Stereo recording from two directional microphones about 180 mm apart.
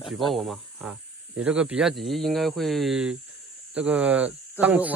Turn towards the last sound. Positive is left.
turn(degrees=-10)  # may be behind; listen again after turning